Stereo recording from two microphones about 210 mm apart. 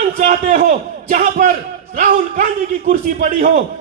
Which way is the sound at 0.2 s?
40° right (ahead or behind).